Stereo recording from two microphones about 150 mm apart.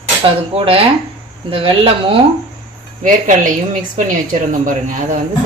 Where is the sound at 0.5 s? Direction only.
40° right (ahead or behind).